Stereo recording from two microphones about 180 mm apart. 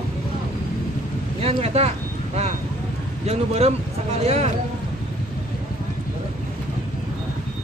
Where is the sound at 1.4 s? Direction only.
35° right (ahead or behind).